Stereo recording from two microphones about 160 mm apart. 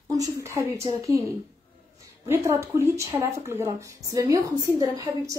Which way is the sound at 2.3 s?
15° right (ahead or behind).